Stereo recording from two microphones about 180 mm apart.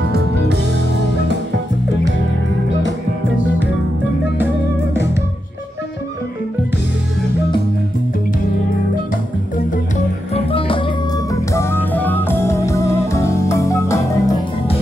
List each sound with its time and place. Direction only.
0.0 s music: 65° right (ahead or behind)
10.3 s music: 30° left (ahead or behind)
11.3 s music: 15° left (ahead or behind)